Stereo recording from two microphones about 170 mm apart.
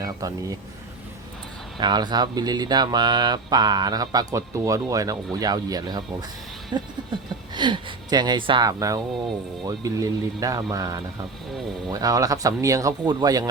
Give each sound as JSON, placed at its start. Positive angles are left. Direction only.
{"t": 0.0, "sound": "speech", "side_deg": -20}
{"t": 1.8, "sound": "speech", "side_deg": -25}